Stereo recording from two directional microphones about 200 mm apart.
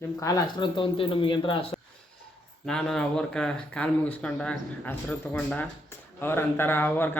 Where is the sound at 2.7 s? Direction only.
5° left (ahead or behind).